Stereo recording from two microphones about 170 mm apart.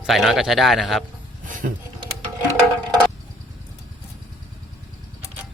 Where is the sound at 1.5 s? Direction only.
50° right (ahead or behind).